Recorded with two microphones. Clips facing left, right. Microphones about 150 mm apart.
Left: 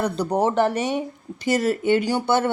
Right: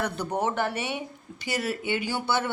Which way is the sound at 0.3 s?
40° left (ahead or behind).